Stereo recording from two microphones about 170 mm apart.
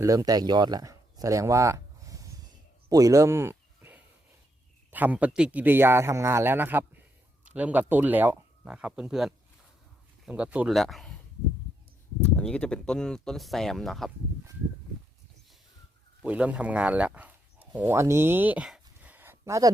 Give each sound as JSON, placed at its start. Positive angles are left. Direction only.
{"t": 0.0, "sound": "speech", "side_deg": -20}
{"t": 2.9, "sound": "a sound", "side_deg": -20}
{"t": 4.9, "sound": "speech", "side_deg": -10}
{"t": 12.2, "sound": "speech", "side_deg": 5}
{"t": 16.2, "sound": "speech", "side_deg": -10}